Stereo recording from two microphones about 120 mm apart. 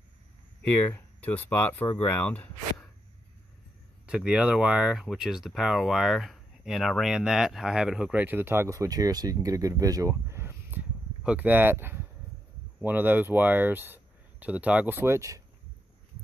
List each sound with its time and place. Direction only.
0.6 s speech: 15° left (ahead or behind)
4.0 s speech: 10° right (ahead or behind); by 15.4 s 25° right (ahead or behind)